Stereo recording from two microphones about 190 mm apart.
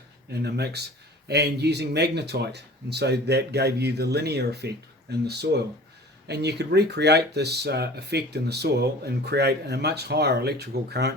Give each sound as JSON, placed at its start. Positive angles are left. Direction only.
{"t": 0.3, "sound": "speech", "side_deg": -60}